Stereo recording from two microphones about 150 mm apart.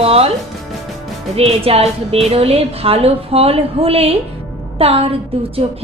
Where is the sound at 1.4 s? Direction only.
40° right (ahead or behind).